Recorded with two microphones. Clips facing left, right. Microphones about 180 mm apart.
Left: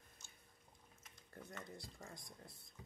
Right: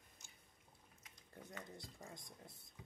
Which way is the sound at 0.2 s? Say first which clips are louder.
Left 1 dB; 15° right (ahead or behind).